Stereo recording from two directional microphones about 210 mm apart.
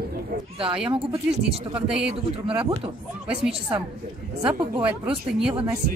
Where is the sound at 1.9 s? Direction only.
5° right (ahead or behind).